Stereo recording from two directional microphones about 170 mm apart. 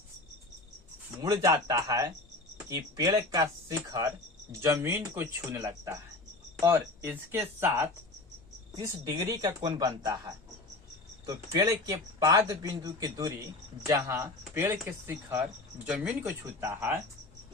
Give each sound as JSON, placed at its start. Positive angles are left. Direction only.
{"t": 1.2, "sound": "speech", "side_deg": -20}
{"t": 8.7, "sound": "speech", "side_deg": -20}